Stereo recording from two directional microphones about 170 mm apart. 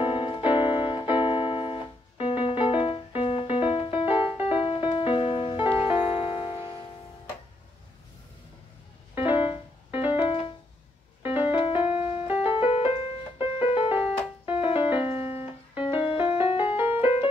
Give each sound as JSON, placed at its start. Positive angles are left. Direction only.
{"t": 0.0, "sound": "piano", "side_deg": 30}
{"t": 2.2, "sound": "music", "side_deg": 30}
{"t": 9.3, "sound": "music", "side_deg": 30}
{"t": 9.8, "sound": "music", "side_deg": -10}
{"t": 11.4, "sound": "music", "side_deg": 30}
{"t": 11.7, "sound": "music", "side_deg": -10}
{"t": 12.3, "sound": "music", "side_deg": 30}
{"t": 14.4, "sound": "music", "side_deg": -10}
{"t": 14.7, "sound": "music", "side_deg": 30}
{"t": 15.1, "sound": "piano", "side_deg": -10}
{"t": 15.8, "sound": "music", "side_deg": 30}
{"t": 16.7, "sound": "music", "side_deg": -10}